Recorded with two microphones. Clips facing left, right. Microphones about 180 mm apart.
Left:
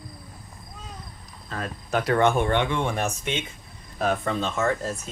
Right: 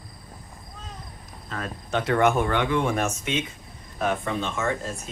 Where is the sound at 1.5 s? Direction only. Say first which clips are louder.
Left 1 dB; 35° left (ahead or behind).